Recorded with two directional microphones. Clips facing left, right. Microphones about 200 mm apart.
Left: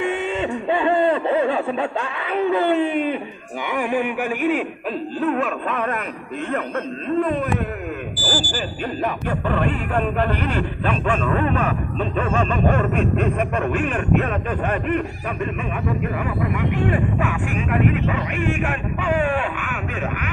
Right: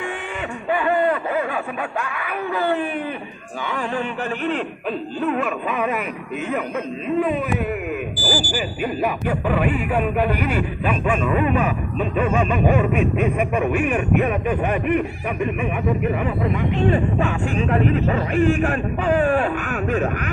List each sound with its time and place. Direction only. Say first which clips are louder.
0.7 s speech: left 1 dB; 25° left (ahead or behind); by 4.6 s 10° left (ahead or behind)
5.2 s music: left 1 dB; centre (ahead or behind)
7.1 s speech: even; 5° right (ahead or behind)
16.7 s speech: right 4 dB; 30° right (ahead or behind)